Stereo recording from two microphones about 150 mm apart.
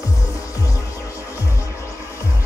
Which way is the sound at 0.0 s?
20° left (ahead or behind).